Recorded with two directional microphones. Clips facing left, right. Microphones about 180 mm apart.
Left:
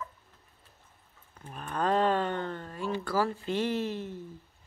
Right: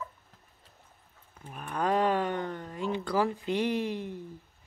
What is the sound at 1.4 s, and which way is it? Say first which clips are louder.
Speech: even; 10° right (ahead or behind).